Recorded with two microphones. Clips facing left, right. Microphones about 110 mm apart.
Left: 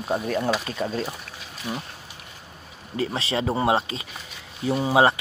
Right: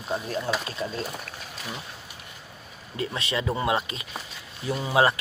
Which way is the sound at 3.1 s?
30° left (ahead or behind).